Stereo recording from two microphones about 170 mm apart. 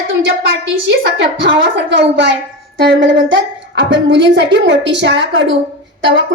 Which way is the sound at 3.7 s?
90° right.